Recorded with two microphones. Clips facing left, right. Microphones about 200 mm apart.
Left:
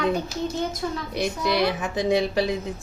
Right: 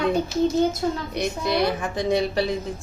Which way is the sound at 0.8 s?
40° right (ahead or behind).